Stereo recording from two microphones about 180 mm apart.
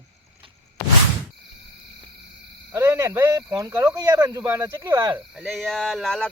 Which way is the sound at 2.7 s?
15° right (ahead or behind).